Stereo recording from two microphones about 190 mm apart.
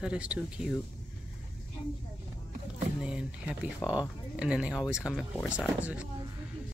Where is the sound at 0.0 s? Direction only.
5° right (ahead or behind).